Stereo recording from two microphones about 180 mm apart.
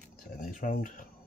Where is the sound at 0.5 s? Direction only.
50° left (ahead or behind).